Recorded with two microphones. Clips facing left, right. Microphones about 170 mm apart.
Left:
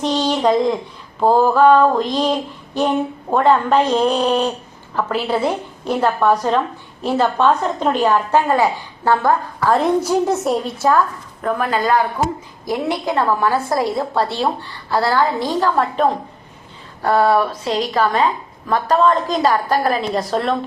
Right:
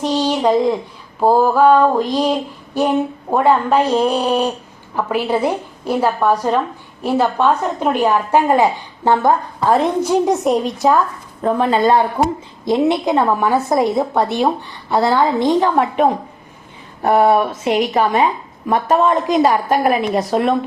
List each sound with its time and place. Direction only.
0.0 s female singing: 10° right (ahead or behind)
11.4 s a woman's voice: 25° right (ahead or behind)